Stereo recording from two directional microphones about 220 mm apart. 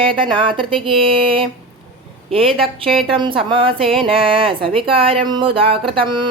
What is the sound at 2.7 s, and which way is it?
Speech, 25° right (ahead or behind).